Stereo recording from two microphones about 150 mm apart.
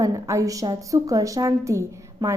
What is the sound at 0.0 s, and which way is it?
A woman's voice, 20° right (ahead or behind).